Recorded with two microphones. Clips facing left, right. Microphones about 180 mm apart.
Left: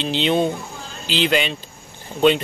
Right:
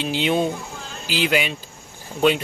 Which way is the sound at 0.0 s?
5° right (ahead or behind).